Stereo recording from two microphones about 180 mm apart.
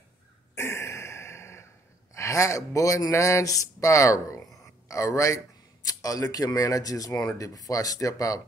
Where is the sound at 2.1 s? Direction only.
15° left (ahead or behind).